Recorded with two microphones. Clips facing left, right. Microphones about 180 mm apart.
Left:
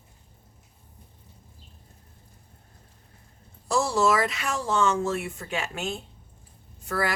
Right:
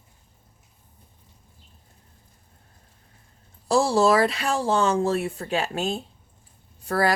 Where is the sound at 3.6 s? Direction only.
30° right (ahead or behind).